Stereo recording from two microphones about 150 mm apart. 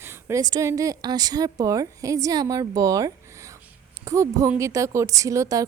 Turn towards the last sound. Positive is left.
turn(degrees=-20)  # may be behind; listen again after turning